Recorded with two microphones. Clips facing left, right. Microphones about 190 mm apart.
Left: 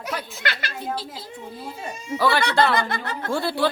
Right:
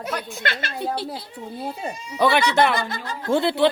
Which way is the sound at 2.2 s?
20° right (ahead or behind).